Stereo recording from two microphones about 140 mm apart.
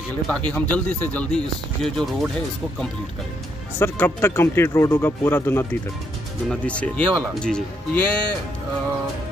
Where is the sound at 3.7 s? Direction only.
15° left (ahead or behind).